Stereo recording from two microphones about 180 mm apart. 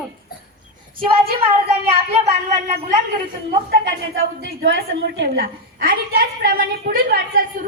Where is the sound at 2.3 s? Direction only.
35° right (ahead or behind).